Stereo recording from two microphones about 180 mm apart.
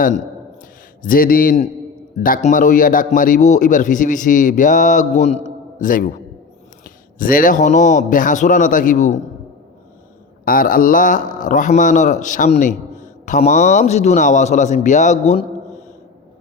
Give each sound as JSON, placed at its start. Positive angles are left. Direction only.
{"t": 1.0, "sound": "a man's voice", "side_deg": 50}
{"t": 10.4, "sound": "a man's voice", "side_deg": 50}